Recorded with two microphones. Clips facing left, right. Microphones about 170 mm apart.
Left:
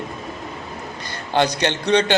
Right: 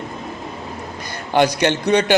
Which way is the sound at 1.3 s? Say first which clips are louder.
Right 3 dB; 15° right (ahead or behind).